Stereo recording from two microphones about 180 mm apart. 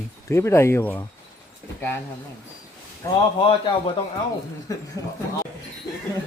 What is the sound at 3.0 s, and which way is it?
Speech, 15° left (ahead or behind).